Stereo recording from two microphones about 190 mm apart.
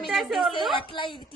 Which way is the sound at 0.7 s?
25° left (ahead or behind).